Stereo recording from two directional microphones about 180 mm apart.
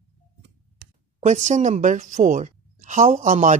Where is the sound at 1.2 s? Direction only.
40° right (ahead or behind).